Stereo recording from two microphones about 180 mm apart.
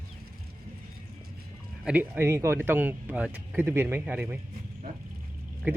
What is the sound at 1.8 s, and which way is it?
Speech, 10° right (ahead or behind).